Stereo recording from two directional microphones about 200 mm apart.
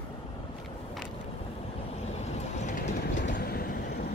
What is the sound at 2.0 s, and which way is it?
Vehicle, 35° left (ahead or behind).